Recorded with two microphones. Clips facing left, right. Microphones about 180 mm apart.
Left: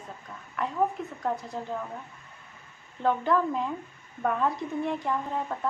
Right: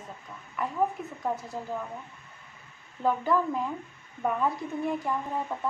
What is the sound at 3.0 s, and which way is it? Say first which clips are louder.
A woman's voice: left 1 dB; 5° right (ahead or behind).